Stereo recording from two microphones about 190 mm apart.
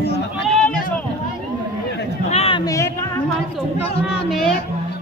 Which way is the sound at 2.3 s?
30° left (ahead or behind).